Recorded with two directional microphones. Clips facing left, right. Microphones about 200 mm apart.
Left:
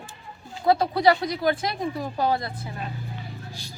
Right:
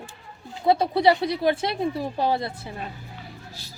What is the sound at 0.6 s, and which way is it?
Speech, 25° right (ahead or behind).